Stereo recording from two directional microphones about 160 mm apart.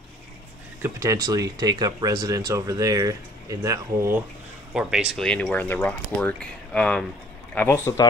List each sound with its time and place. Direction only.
0.8 s speech: 20° right (ahead or behind)
4.7 s speech: 5° right (ahead or behind); by 8.1 s 15° left (ahead or behind)